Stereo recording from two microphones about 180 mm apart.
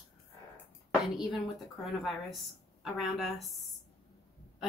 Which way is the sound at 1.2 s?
Centre (ahead or behind).